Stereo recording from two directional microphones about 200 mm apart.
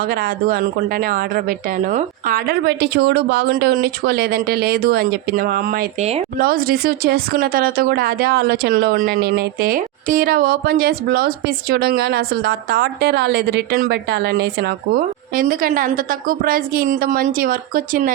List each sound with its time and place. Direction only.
0.0 s speech: 50° right (ahead or behind)
15.4 s speech: 45° right (ahead or behind)